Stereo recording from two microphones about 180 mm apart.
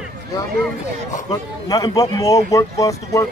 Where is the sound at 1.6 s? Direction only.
20° left (ahead or behind).